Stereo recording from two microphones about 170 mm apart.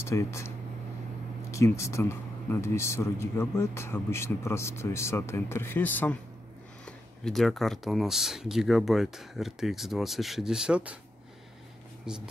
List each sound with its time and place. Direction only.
0.0 s speech: 15° left (ahead or behind)
1.5 s speech: 15° left (ahead or behind)
7.2 s speech: centre (ahead or behind)
12.1 s speech: 5° right (ahead or behind)